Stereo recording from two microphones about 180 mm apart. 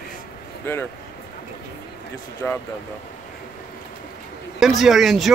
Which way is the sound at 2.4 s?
10° left (ahead or behind).